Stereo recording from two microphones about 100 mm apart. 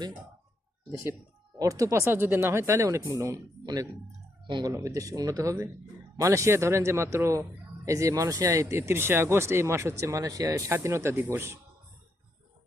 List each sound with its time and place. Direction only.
1.5 s speech: 35° right (ahead or behind)
4.4 s speech: 50° right (ahead or behind)
4.7 s speech: 30° right (ahead or behind)